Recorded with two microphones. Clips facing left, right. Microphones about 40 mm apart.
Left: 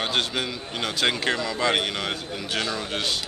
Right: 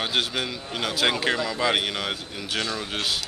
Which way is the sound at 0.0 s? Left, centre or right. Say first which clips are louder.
Even; centre.